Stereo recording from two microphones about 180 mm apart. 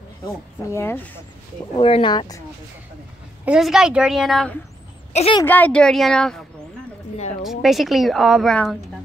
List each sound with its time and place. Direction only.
0.7 s speech: 15° left (ahead or behind)
1.8 s speech: 30° left (ahead or behind)
3.4 s a woman's voice: 5° right (ahead or behind)
5.1 s a woman's voice: 35° left (ahead or behind)
5.4 s a woman's voice: 10° left (ahead or behind)
7.4 s a woman's voice: centre (ahead or behind)